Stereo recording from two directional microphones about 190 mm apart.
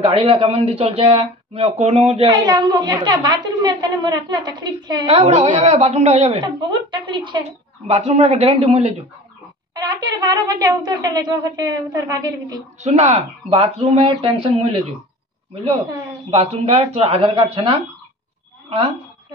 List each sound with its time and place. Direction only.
0.1 s speech: 30° right (ahead or behind)
2.2 s a woman's voice: 20° right (ahead or behind)
5.2 s speech: 35° right (ahead or behind)
6.4 s speech: 25° right (ahead or behind)
9.8 s a woman's voice: 20° right (ahead or behind)
12.8 s speech: 35° right (ahead or behind)
16.3 s speech: 30° right (ahead or behind)